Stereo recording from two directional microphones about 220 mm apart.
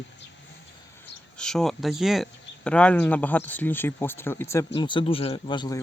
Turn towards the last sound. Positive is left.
turn(degrees=20)  # may be behind; listen again after turning